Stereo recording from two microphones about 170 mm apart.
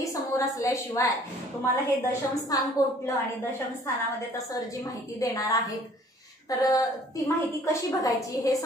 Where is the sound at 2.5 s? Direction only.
20° left (ahead or behind).